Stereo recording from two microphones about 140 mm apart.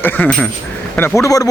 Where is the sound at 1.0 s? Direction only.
20° left (ahead or behind).